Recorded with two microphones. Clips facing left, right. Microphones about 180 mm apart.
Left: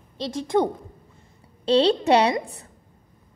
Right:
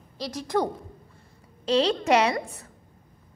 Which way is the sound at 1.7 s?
30° left (ahead or behind).